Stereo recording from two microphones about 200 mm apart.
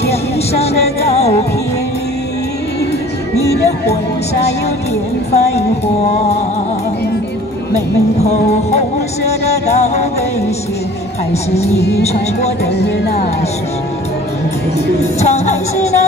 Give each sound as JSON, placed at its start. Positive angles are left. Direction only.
{"t": 0.0, "sound": "music", "side_deg": 30}
{"t": 5.3, "sound": "music", "side_deg": 30}
{"t": 8.2, "sound": "music", "side_deg": 35}
{"t": 15.1, "sound": "music", "side_deg": 35}